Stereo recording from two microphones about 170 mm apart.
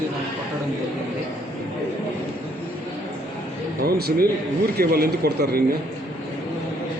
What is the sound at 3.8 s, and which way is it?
Speech, 65° right (ahead or behind).